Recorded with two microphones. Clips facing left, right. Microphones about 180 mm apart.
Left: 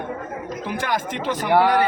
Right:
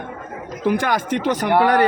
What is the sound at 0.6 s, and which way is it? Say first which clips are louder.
Speech: right 7 dB; 50° right (ahead or behind).